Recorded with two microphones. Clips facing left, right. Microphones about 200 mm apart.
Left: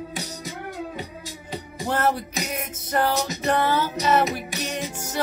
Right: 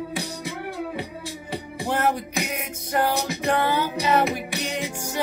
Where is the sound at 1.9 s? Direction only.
15° right (ahead or behind).